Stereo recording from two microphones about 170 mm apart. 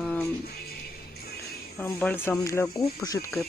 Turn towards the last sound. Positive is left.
turn(degrees=20)  # may be behind; listen again after turning